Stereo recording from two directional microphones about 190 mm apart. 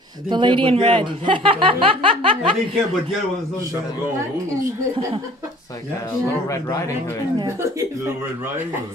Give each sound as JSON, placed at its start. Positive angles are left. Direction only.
{"t": 0.3, "sound": "speech", "side_deg": -25}
{"t": 7.3, "sound": "speech", "side_deg": -15}